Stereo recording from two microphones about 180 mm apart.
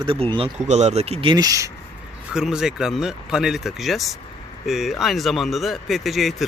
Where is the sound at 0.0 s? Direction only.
30° right (ahead or behind).